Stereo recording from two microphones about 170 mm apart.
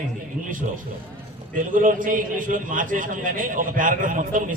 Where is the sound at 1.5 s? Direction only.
50° right (ahead or behind).